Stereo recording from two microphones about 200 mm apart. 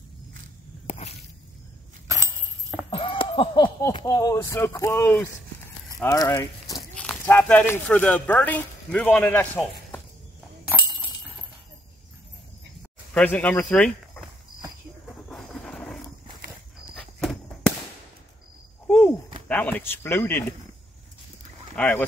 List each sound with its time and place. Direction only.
0.8 s walk: 30° left (ahead or behind)
2.0 s a sound: 15° right (ahead or behind)
2.9 s speech: 25° left (ahead or behind); by 10.0 s 10° left (ahead or behind)
10.7 s a sound: 10° right (ahead or behind)
13.1 s speech: 10° left (ahead or behind)
15.2 s thunder: 5° left (ahead or behind)
16.9 s walk: 5° left (ahead or behind)
19.4 s speech: 5° left (ahead or behind)
21.7 s speech: 10° left (ahead or behind)